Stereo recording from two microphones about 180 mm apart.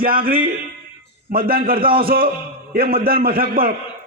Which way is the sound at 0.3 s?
55° right (ahead or behind).